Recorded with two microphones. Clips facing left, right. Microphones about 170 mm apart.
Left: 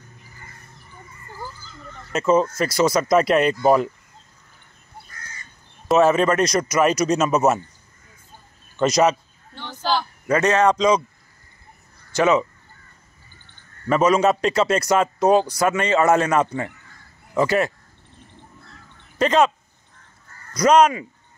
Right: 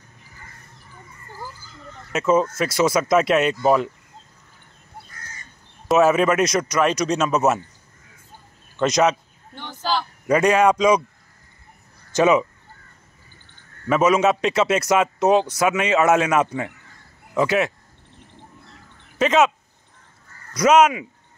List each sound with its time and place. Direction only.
2.1 s a man's voice: 5° right (ahead or behind)
5.9 s a man's voice: 5° right (ahead or behind)
8.7 s speech: centre (ahead or behind)
10.2 s a man's voice: 15° right (ahead or behind)
12.1 s speech: 15° right (ahead or behind)
13.8 s a man's voice: 5° right (ahead or behind)
19.1 s speech: 5° right (ahead or behind)
20.5 s a man's voice: 5° right (ahead or behind)